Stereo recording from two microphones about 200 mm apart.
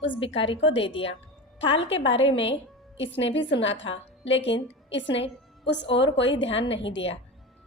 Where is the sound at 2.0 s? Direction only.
70° left (ahead or behind).